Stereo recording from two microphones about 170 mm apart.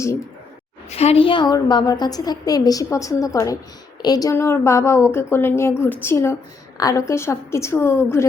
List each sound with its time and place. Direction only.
0.9 s a woman's voice: 35° left (ahead or behind); by 8.3 s 15° left (ahead or behind)